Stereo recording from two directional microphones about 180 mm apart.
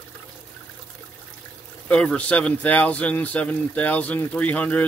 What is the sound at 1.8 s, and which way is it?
Speech, 5° left (ahead or behind).